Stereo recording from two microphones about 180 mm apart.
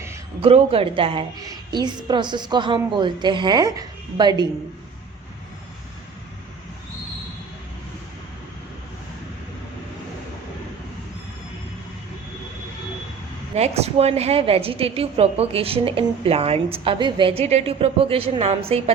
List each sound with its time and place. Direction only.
0.4 s a woman's voice: 30° right (ahead or behind)
13.6 s a woman's voice: 35° right (ahead or behind)